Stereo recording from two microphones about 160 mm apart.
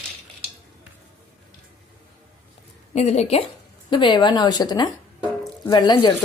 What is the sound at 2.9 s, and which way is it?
Speech, 45° left (ahead or behind).